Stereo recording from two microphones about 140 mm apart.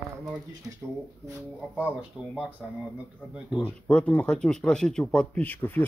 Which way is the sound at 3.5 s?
10° left (ahead or behind).